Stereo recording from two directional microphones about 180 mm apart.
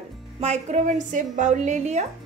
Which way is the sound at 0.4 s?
40° right (ahead or behind).